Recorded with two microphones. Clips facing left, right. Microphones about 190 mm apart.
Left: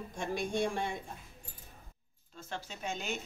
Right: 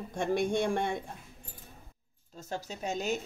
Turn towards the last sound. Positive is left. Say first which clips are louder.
# right 6 dB
turn(degrees=-40)  # may be behind; listen again after turning